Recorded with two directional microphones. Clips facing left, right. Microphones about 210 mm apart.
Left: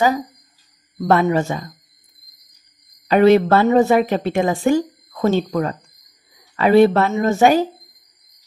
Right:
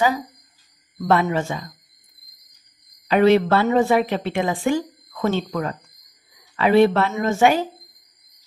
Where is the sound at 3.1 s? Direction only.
45° left (ahead or behind).